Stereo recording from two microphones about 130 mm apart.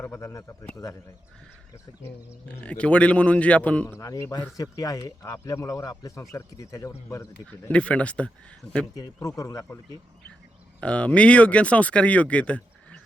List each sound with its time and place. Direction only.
0.0 s speech: 20° left (ahead or behind)
2.0 s speech: 10° left (ahead or behind)
3.8 s speech: 20° left (ahead or behind)
7.7 s speech: 10° left (ahead or behind)
9.2 s speech: 25° left (ahead or behind)
10.8 s speech: 10° left (ahead or behind)